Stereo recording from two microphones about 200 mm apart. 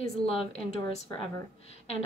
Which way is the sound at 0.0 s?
30° left (ahead or behind).